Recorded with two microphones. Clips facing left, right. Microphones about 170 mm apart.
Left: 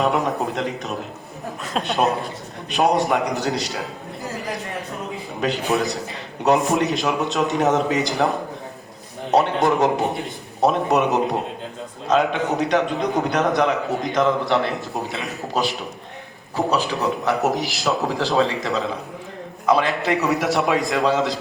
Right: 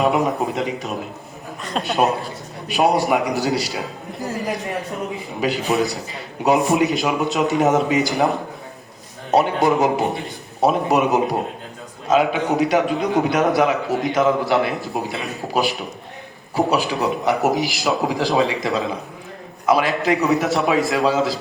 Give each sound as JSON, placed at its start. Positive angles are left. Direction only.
{"t": 0.0, "sound": "a man's voice", "side_deg": -5}
{"t": 6.4, "sound": "a man's voice", "side_deg": -5}
{"t": 9.4, "sound": "a man's voice", "side_deg": -5}
{"t": 17.4, "sound": "a man's voice", "side_deg": -5}